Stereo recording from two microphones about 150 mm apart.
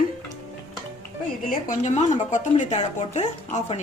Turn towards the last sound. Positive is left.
turn(degrees=50)  # may be behind; listen again after turning